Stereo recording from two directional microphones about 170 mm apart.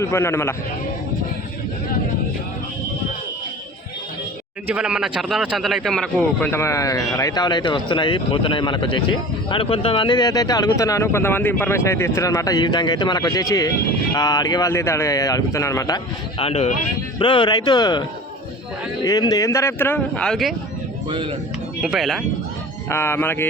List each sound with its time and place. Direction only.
0.0 s speech: 15° left (ahead or behind)
4.7 s a man's voice: 5° right (ahead or behind); by 16.0 s 20° left (ahead or behind)
16.4 s a man's voice: 35° left (ahead or behind)
19.0 s speech: 20° left (ahead or behind); by 20.6 s centre (ahead or behind)
21.1 s speech: 30° right (ahead or behind)
21.8 s speech: 5° right (ahead or behind)
22.9 s speech: 15° left (ahead or behind)